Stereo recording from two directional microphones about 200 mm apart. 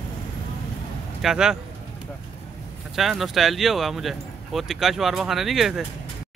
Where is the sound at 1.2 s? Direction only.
5° right (ahead or behind).